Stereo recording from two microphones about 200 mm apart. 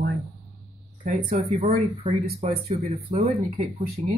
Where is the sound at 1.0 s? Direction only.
30° right (ahead or behind).